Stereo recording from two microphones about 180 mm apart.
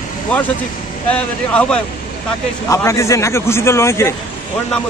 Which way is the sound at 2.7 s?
15° left (ahead or behind).